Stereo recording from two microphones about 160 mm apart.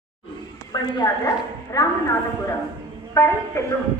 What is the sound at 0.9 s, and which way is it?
Speech, 20° left (ahead or behind).